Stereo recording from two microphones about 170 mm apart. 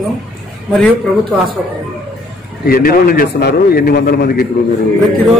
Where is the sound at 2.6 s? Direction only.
60° left (ahead or behind).